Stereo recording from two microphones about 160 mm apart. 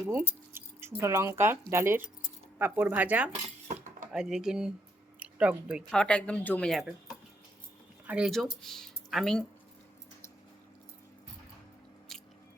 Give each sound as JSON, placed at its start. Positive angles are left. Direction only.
{"t": 0.1, "sound": "speech", "side_deg": -15}
{"t": 5.9, "sound": "speech", "side_deg": 5}
{"t": 8.0, "sound": "speech", "side_deg": -5}